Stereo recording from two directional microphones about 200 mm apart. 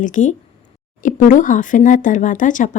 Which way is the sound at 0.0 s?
40° left (ahead or behind).